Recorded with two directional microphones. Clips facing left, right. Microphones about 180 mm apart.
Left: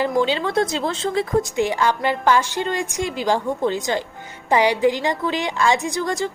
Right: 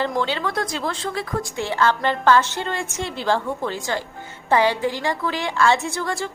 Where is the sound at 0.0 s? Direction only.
10° left (ahead or behind).